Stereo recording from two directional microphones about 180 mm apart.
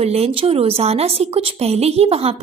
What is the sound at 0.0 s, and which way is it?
A woman's voice, 35° right (ahead or behind).